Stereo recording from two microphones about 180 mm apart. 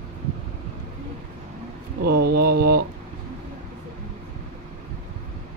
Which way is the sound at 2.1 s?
60° right (ahead or behind).